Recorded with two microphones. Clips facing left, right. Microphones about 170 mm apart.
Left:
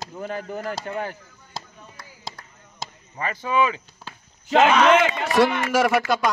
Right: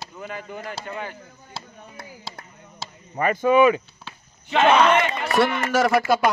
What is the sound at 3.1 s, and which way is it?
Speech, 50° right (ahead or behind).